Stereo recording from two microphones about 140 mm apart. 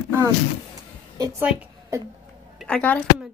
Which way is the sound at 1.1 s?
25° right (ahead or behind).